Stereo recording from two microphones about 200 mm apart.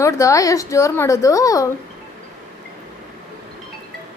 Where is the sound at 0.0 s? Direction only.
15° left (ahead or behind).